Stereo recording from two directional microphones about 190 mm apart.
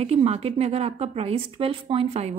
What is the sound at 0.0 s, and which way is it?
Speech, 35° right (ahead or behind).